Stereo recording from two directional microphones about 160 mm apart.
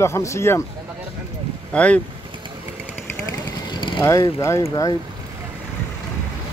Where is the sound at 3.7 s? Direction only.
30° left (ahead or behind).